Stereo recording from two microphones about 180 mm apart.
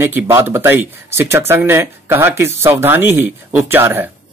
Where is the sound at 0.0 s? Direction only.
15° right (ahead or behind).